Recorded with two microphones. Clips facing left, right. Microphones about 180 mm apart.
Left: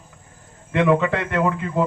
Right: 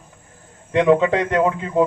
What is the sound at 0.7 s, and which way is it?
Speech, 35° right (ahead or behind).